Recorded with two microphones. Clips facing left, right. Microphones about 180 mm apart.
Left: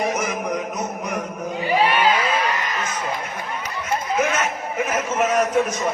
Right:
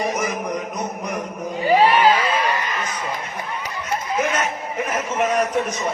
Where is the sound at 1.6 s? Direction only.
40° right (ahead or behind).